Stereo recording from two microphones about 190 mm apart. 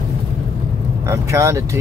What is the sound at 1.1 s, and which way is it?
Speech, 15° right (ahead or behind).